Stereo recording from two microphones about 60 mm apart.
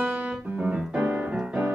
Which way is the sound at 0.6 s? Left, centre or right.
Centre.